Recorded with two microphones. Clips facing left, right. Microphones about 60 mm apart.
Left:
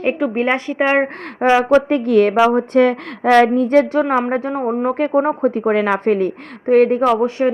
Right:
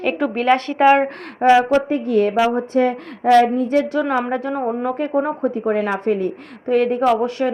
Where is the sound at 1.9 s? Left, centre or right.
Left.